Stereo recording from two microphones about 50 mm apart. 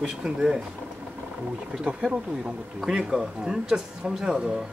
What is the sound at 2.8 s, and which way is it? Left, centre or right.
Speech, centre.